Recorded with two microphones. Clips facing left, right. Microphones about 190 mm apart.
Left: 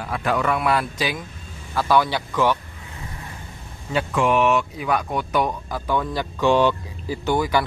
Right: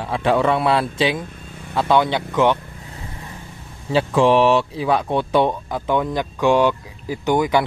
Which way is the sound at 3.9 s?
30° right (ahead or behind).